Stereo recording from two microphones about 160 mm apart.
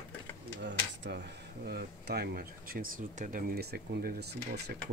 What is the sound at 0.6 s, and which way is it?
Speech, 90° right.